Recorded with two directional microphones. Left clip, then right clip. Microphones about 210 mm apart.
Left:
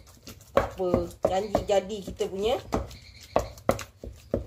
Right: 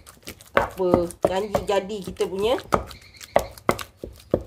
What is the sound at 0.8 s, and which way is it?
Speech, 55° right (ahead or behind).